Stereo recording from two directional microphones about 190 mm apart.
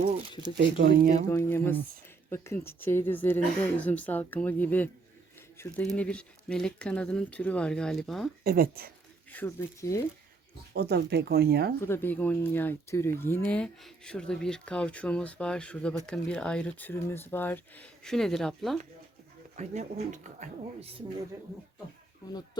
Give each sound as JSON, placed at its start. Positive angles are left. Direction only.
{"t": 0.9, "sound": "speech", "side_deg": -50}
{"t": 1.3, "sound": "speech", "side_deg": 15}
{"t": 8.4, "sound": "speech", "side_deg": -50}
{"t": 9.3, "sound": "speech", "side_deg": 10}
{"t": 10.8, "sound": "speech", "side_deg": -60}
{"t": 11.8, "sound": "speech", "side_deg": 10}
{"t": 19.5, "sound": "speech", "side_deg": -35}